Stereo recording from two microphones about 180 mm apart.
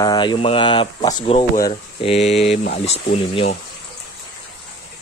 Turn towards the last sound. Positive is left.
turn(degrees=35)  # may be behind; listen again after turning